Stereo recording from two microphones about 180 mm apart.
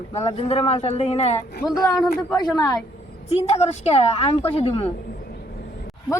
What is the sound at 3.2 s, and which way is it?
A woman's voice, 35° left (ahead or behind).